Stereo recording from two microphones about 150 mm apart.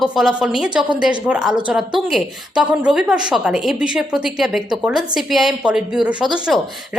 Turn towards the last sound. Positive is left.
turn(degrees=-5)  # may be behind; listen again after turning